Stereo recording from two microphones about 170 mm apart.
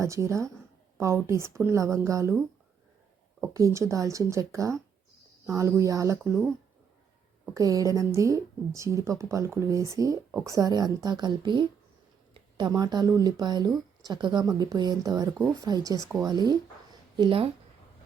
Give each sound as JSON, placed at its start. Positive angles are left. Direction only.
{"t": 0.0, "sound": "speech", "side_deg": -20}
{"t": 3.4, "sound": "speech", "side_deg": -15}
{"t": 7.5, "sound": "speech", "side_deg": -20}